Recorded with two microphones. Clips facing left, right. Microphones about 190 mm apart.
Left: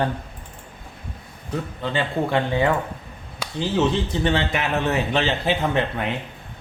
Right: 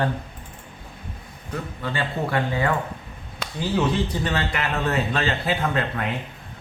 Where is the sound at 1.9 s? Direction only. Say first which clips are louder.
Left 3 dB; 20° left (ahead or behind).